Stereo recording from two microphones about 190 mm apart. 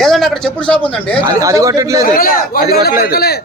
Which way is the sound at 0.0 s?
Centre (ahead or behind).